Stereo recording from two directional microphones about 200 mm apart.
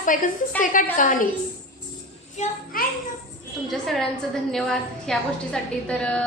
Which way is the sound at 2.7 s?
45° left (ahead or behind).